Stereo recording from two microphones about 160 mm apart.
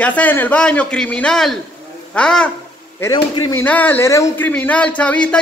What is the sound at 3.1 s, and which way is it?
Speech, 30° left (ahead or behind).